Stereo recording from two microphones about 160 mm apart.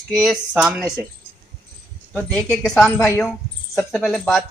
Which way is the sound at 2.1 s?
10° left (ahead or behind).